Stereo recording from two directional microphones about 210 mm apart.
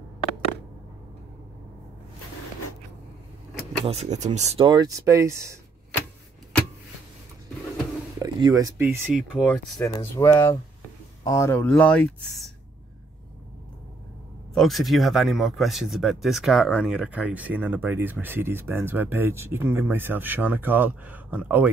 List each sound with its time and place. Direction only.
3.8 s speech: 30° right (ahead or behind); by 5.6 s 15° right (ahead or behind)
8.2 s speech: 20° right (ahead or behind)
9.1 s speech: 5° left (ahead or behind)
14.5 s speech: centre (ahead or behind)